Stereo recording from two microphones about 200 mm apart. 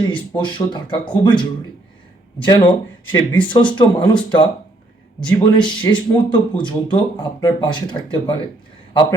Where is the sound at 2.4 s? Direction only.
25° left (ahead or behind).